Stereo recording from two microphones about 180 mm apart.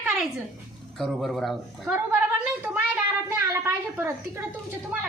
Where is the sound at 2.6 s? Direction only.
10° right (ahead or behind).